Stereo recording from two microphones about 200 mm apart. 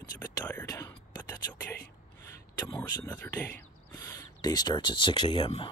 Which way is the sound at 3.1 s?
10° left (ahead or behind).